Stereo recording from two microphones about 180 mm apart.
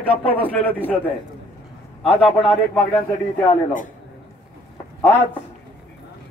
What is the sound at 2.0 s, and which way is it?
Speech, 30° left (ahead or behind).